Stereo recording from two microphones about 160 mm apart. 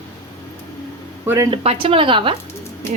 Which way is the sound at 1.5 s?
35° right (ahead or behind).